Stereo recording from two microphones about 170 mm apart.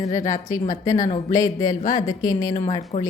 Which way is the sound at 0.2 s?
50° left (ahead or behind).